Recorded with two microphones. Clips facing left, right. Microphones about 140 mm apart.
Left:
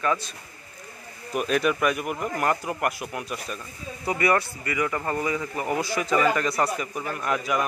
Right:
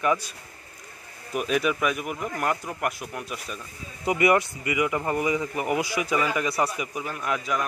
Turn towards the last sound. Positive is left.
turn(degrees=0)  # may be behind; listen again after turning